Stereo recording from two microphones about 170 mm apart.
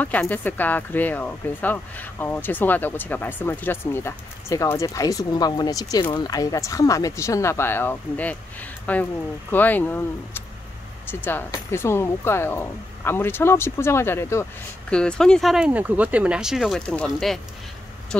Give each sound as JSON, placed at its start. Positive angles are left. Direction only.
{"t": 0.0, "sound": "speech", "side_deg": 10}